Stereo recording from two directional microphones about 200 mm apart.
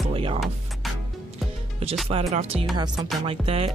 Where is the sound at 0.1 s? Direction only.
25° right (ahead or behind).